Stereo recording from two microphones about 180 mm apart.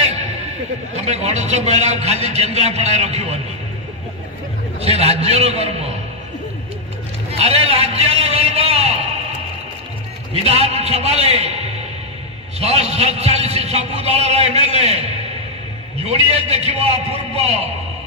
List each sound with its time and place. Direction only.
0.9 s a man's voice: 40° right (ahead or behind)
4.7 s a man's voice: 35° right (ahead or behind)
7.2 s a sound: 35° right (ahead or behind)
10.3 s a man's voice: 35° right (ahead or behind)
16.4 s a man's voice: 35° right (ahead or behind)